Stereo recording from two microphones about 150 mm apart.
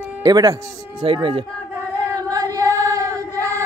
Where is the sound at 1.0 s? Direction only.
35° right (ahead or behind).